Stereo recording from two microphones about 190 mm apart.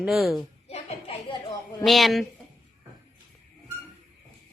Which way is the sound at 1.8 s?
Centre (ahead or behind).